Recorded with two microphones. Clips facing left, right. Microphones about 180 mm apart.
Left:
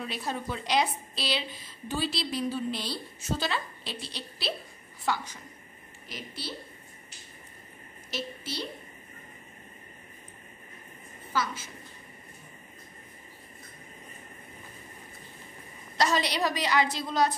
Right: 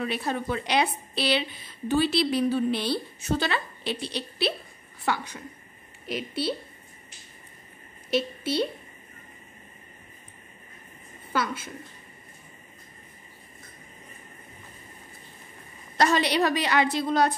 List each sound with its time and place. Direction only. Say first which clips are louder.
0.0 s a woman's voice: right 5 dB; 60° right (ahead or behind)
8.1 s a woman's voice: right 10 dB; 60° right (ahead or behind)
11.3 s a woman's voice: right 3 dB; 55° right (ahead or behind)
16.0 s a woman's voice: right 4 dB; 60° right (ahead or behind)